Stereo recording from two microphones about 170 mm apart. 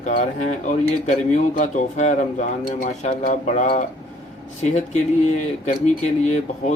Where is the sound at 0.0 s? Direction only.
45° left (ahead or behind).